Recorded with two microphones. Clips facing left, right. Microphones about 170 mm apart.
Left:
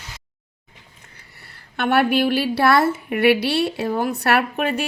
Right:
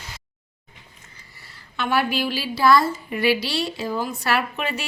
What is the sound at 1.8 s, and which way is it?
A woman's voice, 60° left (ahead or behind).